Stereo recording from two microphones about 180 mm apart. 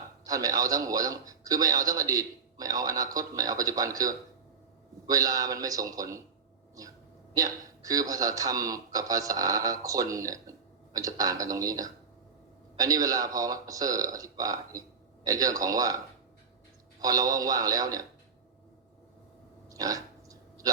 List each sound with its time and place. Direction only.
0.3 s a man's voice: 20° right (ahead or behind)
7.3 s a man's voice: 20° right (ahead or behind)
17.0 s a man's voice: 20° right (ahead or behind)
19.7 s a sound: 20° right (ahead or behind)